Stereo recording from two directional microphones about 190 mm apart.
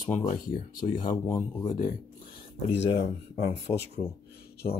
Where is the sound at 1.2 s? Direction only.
20° left (ahead or behind).